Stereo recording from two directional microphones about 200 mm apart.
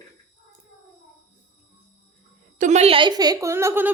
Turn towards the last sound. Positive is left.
turn(degrees=-10)  # may be behind; listen again after turning